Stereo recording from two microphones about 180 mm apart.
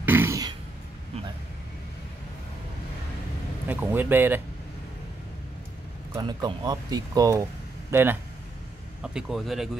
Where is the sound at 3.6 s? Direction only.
10° right (ahead or behind).